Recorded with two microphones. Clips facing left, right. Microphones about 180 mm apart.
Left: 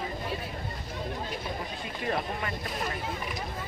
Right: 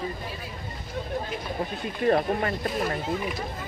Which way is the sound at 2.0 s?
45° right (ahead or behind).